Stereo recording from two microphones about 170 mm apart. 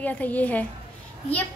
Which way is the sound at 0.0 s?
10° left (ahead or behind).